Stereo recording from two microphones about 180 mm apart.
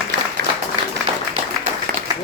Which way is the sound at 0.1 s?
65° right (ahead or behind).